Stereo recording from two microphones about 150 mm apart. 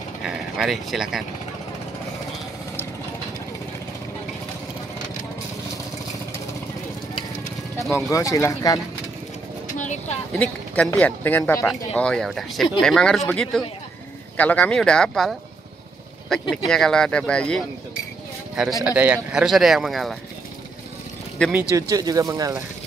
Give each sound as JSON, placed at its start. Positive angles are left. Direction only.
{"t": 0.2, "sound": "speech", "side_deg": -5}
{"t": 7.9, "sound": "speech", "side_deg": 20}
{"t": 9.8, "sound": "a sound", "side_deg": 55}
{"t": 10.3, "sound": "speech", "side_deg": 10}
{"t": 18.9, "sound": "speech", "side_deg": -10}
{"t": 21.7, "sound": "speech", "side_deg": -25}